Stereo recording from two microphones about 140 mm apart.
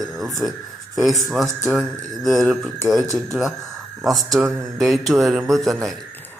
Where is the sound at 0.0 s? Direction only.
Centre (ahead or behind).